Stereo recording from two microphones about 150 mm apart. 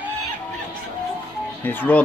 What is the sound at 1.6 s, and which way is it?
Speech, 10° left (ahead or behind).